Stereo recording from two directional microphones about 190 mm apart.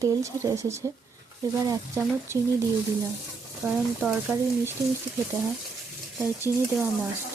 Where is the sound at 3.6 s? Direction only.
5° right (ahead or behind).